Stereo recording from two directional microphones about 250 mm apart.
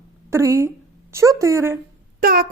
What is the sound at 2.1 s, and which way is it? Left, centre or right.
Speech, right.